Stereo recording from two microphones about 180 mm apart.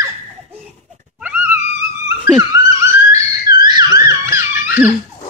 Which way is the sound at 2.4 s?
15° right (ahead or behind).